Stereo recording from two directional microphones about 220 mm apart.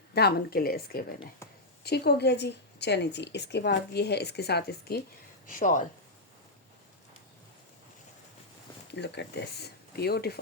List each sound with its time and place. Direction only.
0.1 s a woman's voice: 45° left (ahead or behind)
1.4 s a sound: 10° left (ahead or behind)
1.8 s a woman's voice: 45° left (ahead or behind)
5.5 s speech: 35° left (ahead or behind)
8.9 s a woman's voice: 50° left (ahead or behind)